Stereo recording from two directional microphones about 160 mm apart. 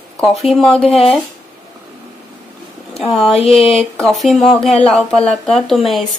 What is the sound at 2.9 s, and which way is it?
Speech, centre (ahead or behind).